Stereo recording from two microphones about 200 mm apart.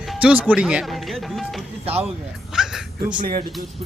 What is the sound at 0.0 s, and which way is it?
Speech, 5° right (ahead or behind).